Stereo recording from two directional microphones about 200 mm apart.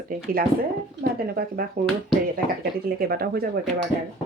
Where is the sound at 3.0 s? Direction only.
50° right (ahead or behind).